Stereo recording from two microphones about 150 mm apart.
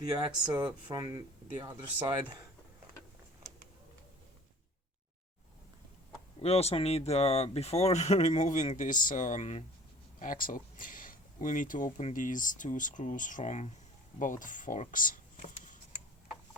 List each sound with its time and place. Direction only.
0.0 s speech: 25° right (ahead or behind)
6.4 s speech: 45° left (ahead or behind)
10.2 s speech: 65° left (ahead or behind); by 13.7 s 50° left (ahead or behind)
14.2 s speech: 60° left (ahead or behind)